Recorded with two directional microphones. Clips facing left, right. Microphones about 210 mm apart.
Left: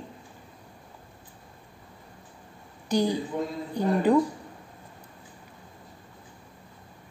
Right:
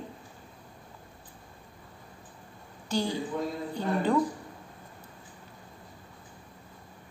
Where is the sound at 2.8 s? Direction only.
15° left (ahead or behind).